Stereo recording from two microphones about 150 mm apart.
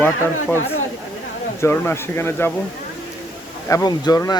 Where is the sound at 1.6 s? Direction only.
15° left (ahead or behind).